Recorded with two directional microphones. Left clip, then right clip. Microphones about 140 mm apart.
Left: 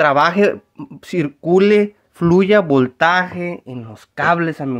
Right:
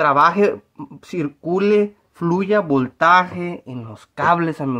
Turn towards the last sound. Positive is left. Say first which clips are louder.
# left 1 dB
turn(degrees=-5)  # may be behind; listen again after turning